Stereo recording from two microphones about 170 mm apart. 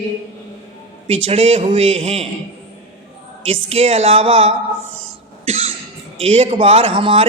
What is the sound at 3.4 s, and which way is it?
A woman's voice, 35° right (ahead or behind).